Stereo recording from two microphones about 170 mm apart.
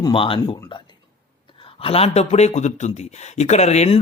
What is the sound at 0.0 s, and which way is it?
Speech, 30° left (ahead or behind).